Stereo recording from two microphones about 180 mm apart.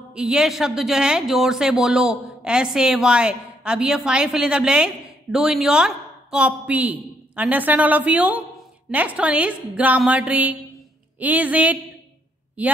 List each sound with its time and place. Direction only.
0.1 s a woman's voice: 5° right (ahead or behind)